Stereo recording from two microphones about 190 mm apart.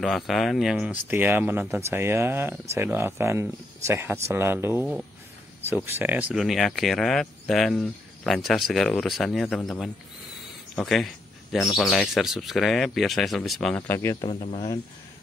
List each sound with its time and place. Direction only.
0.0 s speech: centre (ahead or behind)
14.3 s speech: 25° left (ahead or behind)